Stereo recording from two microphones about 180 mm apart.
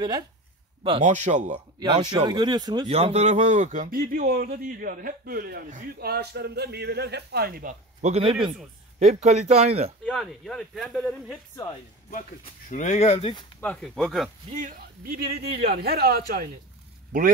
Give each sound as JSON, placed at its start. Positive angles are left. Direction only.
{"t": 1.0, "sound": "speech", "side_deg": -45}
{"t": 1.8, "sound": "speech", "side_deg": -25}
{"t": 2.9, "sound": "a man's voice", "side_deg": -35}
{"t": 8.0, "sound": "speech", "side_deg": -35}
{"t": 10.0, "sound": "speech", "side_deg": 0}
{"t": 12.1, "sound": "speech", "side_deg": 45}
{"t": 13.6, "sound": "speech", "side_deg": 5}
{"t": 14.5, "sound": "a man's voice", "side_deg": -50}